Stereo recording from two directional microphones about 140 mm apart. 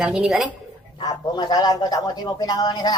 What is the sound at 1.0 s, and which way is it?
A man's voice, 30° left (ahead or behind).